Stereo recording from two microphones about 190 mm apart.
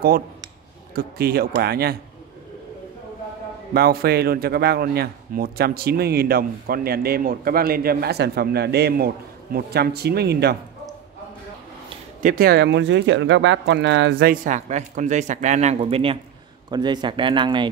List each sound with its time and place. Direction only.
0.9 s speech: 55° right (ahead or behind)
3.7 s speech: 55° right (ahead or behind)
12.2 s speech: 45° right (ahead or behind); by 17.6 s 25° right (ahead or behind)